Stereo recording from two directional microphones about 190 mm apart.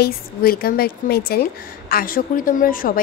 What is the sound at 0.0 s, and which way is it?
A woman's voice, 50° left (ahead or behind).